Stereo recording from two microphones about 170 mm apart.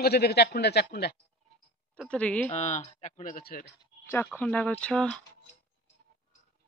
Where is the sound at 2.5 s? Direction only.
40° left (ahead or behind); by 3.7 s 60° left (ahead or behind).